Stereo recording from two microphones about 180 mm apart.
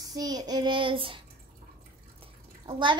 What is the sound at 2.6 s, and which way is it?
Speech, 25° right (ahead or behind).